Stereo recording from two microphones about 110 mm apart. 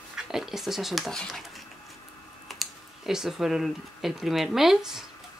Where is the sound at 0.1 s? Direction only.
5° right (ahead or behind).